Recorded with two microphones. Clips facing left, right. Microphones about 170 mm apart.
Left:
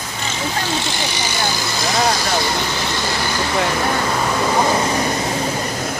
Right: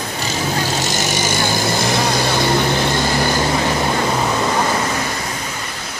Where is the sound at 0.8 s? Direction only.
45° right (ahead or behind).